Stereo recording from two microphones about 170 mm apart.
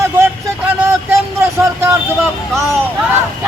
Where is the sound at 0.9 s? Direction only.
15° right (ahead or behind).